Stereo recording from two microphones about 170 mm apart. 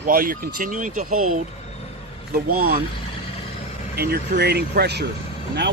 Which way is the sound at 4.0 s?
65° right (ahead or behind).